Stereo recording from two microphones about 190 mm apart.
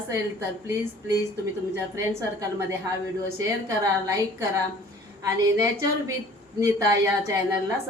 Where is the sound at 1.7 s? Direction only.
15° right (ahead or behind).